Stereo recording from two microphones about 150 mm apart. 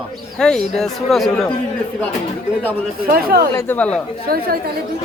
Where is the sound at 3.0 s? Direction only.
75° right (ahead or behind).